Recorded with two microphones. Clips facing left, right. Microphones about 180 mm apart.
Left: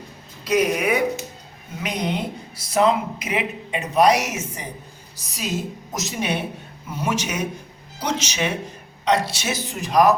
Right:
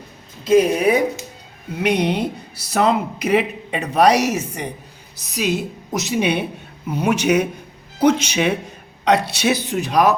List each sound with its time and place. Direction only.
0.4 s speech: 30° right (ahead or behind)
1.8 s a woman's voice: 70° right (ahead or behind)